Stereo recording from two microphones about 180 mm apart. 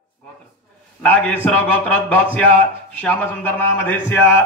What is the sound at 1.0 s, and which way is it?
Speech, 10° left (ahead or behind).